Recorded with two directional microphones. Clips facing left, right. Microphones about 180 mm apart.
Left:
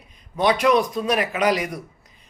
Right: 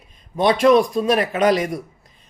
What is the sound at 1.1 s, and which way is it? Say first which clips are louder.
Speech: right 3 dB; 10° left (ahead or behind).